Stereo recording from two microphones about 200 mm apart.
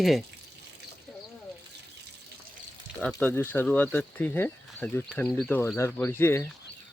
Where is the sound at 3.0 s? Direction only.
5° left (ahead or behind).